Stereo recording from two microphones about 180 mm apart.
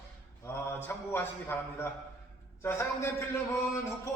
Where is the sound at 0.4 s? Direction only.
10° left (ahead or behind).